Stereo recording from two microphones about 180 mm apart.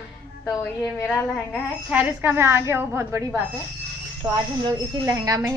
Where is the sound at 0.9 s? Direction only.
5° left (ahead or behind).